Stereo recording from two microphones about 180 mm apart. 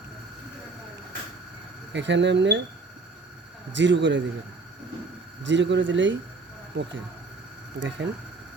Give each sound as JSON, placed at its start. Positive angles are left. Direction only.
{"t": 1.9, "sound": "speech", "side_deg": -80}
{"t": 3.8, "sound": "speech", "side_deg": -90}
{"t": 5.4, "sound": "speech", "side_deg": -90}
{"t": 7.8, "sound": "speech", "side_deg": -90}